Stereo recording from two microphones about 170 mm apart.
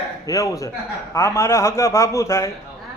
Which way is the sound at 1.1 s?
15° left (ahead or behind).